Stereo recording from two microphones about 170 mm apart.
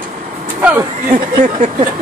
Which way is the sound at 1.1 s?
50° right (ahead or behind).